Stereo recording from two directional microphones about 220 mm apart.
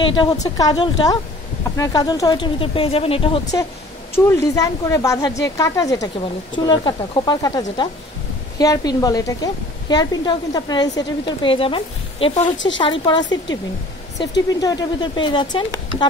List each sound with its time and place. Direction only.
0.0 s a woman's voice: 20° left (ahead or behind)
4.2 s a woman's voice: 10° left (ahead or behind)